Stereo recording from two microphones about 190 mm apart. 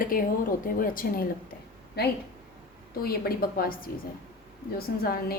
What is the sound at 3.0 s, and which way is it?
A woman's voice, 50° left (ahead or behind).